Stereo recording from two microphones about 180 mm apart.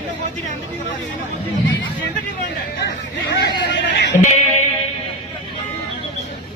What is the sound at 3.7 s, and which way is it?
Music, 75° left (ahead or behind).